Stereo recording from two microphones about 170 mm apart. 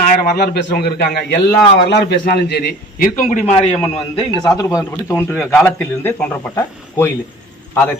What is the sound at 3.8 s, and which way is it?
A man's voice, 30° left (ahead or behind).